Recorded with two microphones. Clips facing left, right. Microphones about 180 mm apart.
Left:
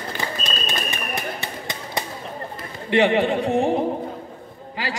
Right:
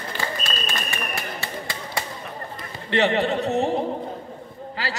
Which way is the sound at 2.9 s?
10° left (ahead or behind).